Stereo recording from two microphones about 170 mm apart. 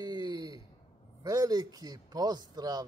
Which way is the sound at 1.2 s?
20° right (ahead or behind).